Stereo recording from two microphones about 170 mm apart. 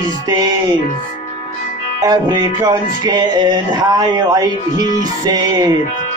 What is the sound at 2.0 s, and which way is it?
Music, 25° right (ahead or behind).